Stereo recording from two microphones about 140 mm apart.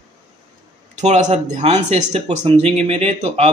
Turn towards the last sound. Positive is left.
turn(degrees=-45)  # may be behind; listen again after turning